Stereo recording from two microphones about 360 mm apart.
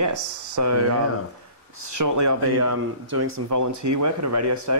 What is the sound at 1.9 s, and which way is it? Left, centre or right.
Speech, right.